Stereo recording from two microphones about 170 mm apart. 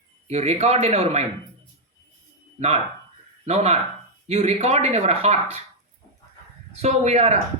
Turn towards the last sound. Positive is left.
turn(degrees=-40)  # may be behind; listen again after turning